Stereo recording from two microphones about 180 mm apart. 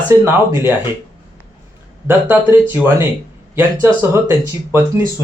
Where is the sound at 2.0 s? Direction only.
10° right (ahead or behind).